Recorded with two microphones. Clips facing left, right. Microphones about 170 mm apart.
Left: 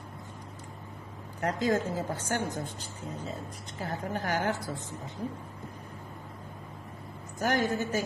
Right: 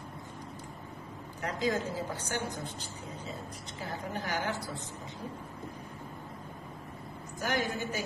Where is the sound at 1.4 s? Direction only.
50° left (ahead or behind).